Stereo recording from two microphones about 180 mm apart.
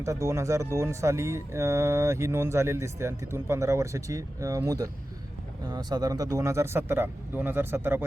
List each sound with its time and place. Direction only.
0.0 s speech: 15° right (ahead or behind)